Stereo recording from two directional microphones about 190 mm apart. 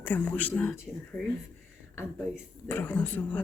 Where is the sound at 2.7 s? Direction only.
10° left (ahead or behind).